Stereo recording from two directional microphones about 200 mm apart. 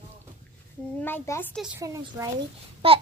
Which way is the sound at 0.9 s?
10° left (ahead or behind).